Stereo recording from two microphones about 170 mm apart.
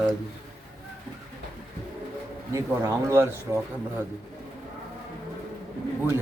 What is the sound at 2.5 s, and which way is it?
Speech, 15° right (ahead or behind).